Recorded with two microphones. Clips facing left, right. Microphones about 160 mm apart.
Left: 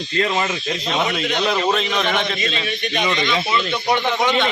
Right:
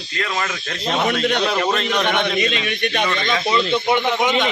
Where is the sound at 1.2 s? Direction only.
60° right (ahead or behind).